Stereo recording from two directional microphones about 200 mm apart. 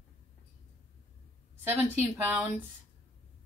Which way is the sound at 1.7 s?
10° right (ahead or behind).